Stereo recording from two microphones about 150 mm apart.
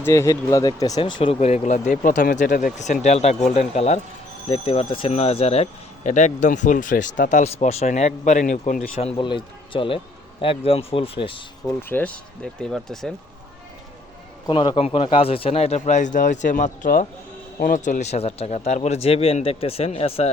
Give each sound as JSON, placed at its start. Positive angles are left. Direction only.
{"t": 0.0, "sound": "speech", "side_deg": 20}
{"t": 9.0, "sound": "a man's voice", "side_deg": 40}
{"t": 11.8, "sound": "speech", "side_deg": 10}
{"t": 14.4, "sound": "speech", "side_deg": 30}